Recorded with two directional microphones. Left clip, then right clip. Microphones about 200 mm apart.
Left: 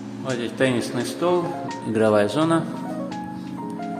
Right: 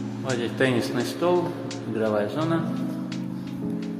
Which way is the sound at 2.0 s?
35° left (ahead or behind).